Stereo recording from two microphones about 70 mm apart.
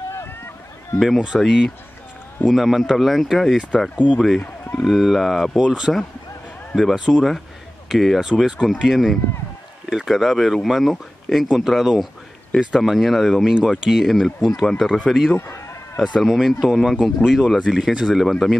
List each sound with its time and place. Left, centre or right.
0.9 s speech: centre
15.3 s run: left
16.0 s speech: centre